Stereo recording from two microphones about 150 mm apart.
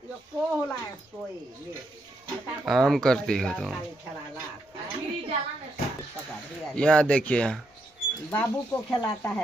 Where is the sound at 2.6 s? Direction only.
Centre (ahead or behind).